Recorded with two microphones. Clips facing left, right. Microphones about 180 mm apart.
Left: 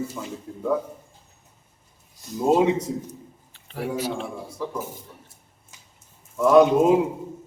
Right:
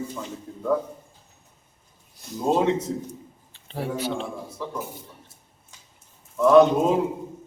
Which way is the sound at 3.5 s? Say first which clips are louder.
Left 1 dB; 30° right (ahead or behind).